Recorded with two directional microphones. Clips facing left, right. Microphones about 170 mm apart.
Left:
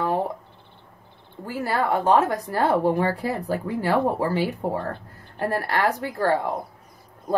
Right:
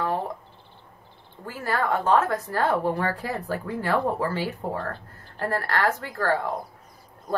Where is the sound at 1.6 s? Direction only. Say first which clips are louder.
Left 2 dB; 15° left (ahead or behind).